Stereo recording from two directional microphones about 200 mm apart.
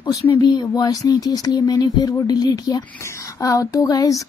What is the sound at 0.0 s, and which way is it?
Speech, 20° left (ahead or behind).